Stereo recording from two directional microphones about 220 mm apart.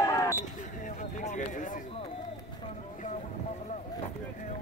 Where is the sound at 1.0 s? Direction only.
35° left (ahead or behind).